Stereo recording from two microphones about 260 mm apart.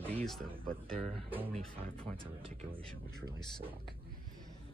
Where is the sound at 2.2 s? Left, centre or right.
Centre.